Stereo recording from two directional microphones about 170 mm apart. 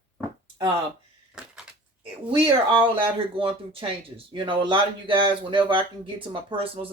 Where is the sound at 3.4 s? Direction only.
30° right (ahead or behind).